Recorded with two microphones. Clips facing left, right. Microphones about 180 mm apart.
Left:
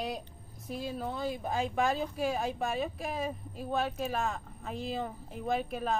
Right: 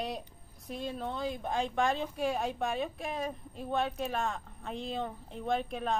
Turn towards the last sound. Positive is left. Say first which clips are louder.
# even
turn(degrees=5)  # may be behind; listen again after turning